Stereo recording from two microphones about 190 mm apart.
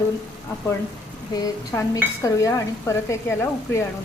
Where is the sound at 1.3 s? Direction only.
20° left (ahead or behind).